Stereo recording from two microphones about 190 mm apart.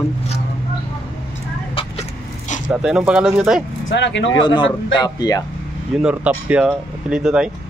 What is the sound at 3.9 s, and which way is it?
Speech, 70° left (ahead or behind).